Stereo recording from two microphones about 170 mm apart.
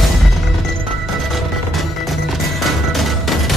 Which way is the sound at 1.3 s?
Centre (ahead or behind).